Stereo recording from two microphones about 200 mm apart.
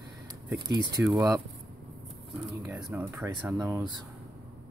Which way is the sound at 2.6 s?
15° right (ahead or behind).